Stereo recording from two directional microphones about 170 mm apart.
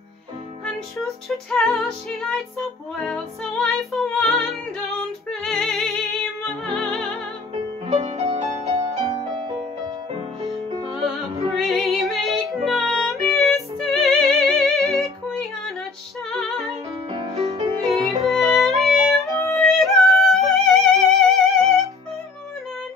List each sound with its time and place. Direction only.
0.7 s music: centre (ahead or behind)
7.8 s music: 35° right (ahead or behind)
9.0 s music: 30° right (ahead or behind)
10.7 s music: 25° right (ahead or behind)
11.5 s music: centre (ahead or behind)
14.9 s yodeling: 5° left (ahead or behind)
16.3 s music: 5° left (ahead or behind)
17.1 s music: 35° right (ahead or behind)
17.8 s music: centre (ahead or behind)